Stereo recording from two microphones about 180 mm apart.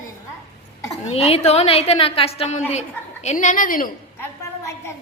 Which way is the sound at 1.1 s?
35° left (ahead or behind).